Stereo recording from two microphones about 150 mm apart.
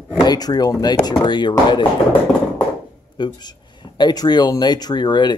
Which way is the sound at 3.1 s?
30° left (ahead or behind).